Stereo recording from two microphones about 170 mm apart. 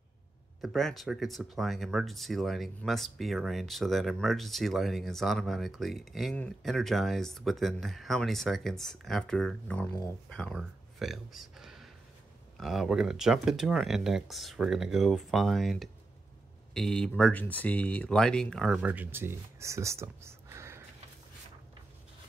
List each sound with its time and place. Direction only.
0.6 s speech: centre (ahead or behind)
18.8 s speech: 10° right (ahead or behind)